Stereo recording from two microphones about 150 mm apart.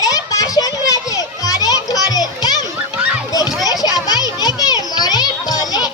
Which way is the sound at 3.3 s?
25° left (ahead or behind).